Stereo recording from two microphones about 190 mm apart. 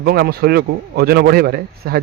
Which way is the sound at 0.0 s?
55° right (ahead or behind).